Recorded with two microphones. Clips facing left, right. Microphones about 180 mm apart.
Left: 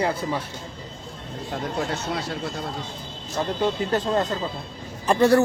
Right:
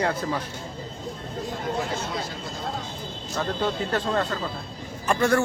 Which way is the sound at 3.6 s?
15° left (ahead or behind).